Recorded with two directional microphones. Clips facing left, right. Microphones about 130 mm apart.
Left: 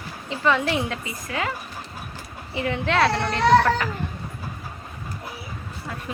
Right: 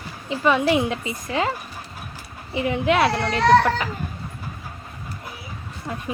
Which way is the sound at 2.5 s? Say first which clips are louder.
Right 3 dB; 15° right (ahead or behind).